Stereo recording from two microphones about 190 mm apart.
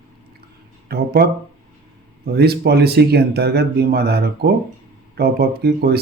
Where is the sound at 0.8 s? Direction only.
55° right (ahead or behind).